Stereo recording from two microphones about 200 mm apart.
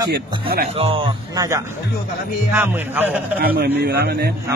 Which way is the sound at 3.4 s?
50° right (ahead or behind).